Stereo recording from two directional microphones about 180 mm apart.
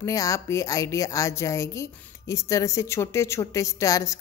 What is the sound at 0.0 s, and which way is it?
A woman's voice, 20° left (ahead or behind).